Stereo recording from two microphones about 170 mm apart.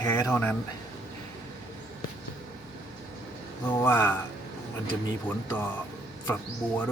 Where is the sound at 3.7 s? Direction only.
15° left (ahead or behind).